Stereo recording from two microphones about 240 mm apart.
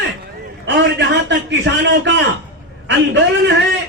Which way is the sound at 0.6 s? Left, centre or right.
Right.